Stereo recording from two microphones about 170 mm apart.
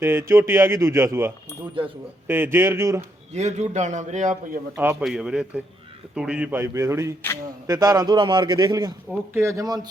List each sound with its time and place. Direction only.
0.0 s speech: 15° right (ahead or behind)
3.3 s a man's voice: 40° right (ahead or behind)
4.8 s a man's voice: 10° right (ahead or behind)